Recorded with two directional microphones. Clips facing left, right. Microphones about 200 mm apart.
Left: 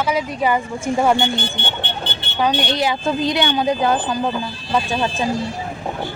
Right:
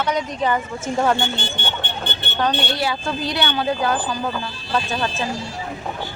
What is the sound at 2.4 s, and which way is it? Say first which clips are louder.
A woman's voice: left 3 dB; 15° left (ahead or behind).